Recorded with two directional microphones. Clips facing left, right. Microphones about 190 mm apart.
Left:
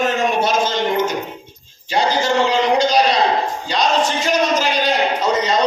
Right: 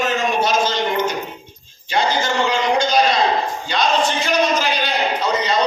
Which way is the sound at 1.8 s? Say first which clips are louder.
Left 2 dB; 35° left (ahead or behind).